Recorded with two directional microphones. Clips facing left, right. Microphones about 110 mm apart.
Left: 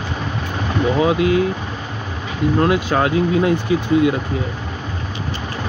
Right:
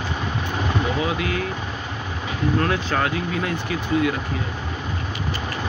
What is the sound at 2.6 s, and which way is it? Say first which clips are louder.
Speech: left 7 dB; 15° left (ahead or behind).